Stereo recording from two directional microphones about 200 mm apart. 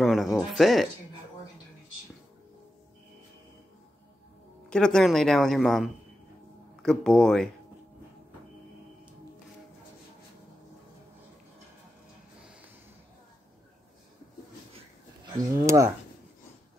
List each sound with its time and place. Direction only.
0.0 s speech: centre (ahead or behind)
4.6 s speech: 5° left (ahead or behind)
15.5 s speech: 15° right (ahead or behind)